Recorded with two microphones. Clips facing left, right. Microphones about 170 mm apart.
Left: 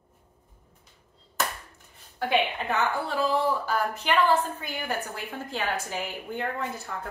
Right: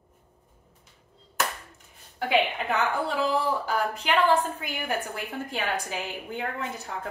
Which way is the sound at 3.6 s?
15° right (ahead or behind).